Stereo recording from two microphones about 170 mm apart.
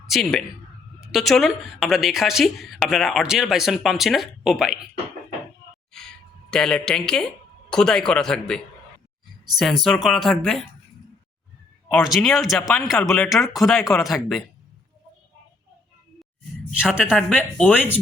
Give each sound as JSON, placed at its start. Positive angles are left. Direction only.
{"t": 0.1, "sound": "speech", "side_deg": 0}
{"t": 5.9, "sound": "a sound", "side_deg": 5}
{"t": 7.7, "sound": "speech", "side_deg": 5}
{"t": 12.0, "sound": "speech", "side_deg": 0}
{"t": 13.7, "sound": "speech", "side_deg": 15}
{"t": 14.0, "sound": "speech", "side_deg": 0}
{"t": 16.8, "sound": "speech", "side_deg": -5}